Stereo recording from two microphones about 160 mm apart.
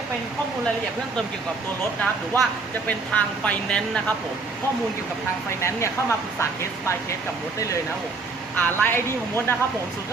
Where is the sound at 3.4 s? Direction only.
5° left (ahead or behind).